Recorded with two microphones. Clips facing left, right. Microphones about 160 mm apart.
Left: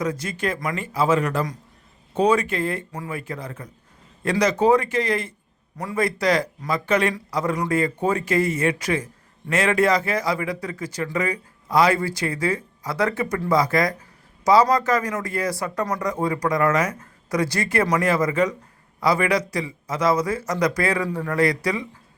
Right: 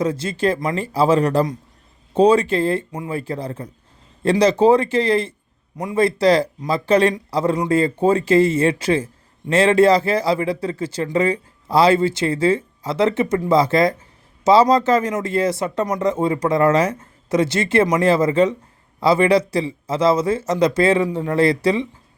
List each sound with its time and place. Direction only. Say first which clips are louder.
0.0 s a man's voice: right 6 dB; 30° right (ahead or behind)